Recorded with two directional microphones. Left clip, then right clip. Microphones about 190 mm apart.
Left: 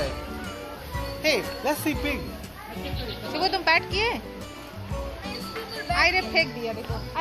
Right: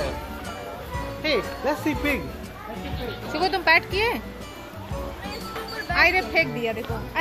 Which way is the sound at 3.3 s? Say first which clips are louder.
Right 3 dB; 5° right (ahead or behind).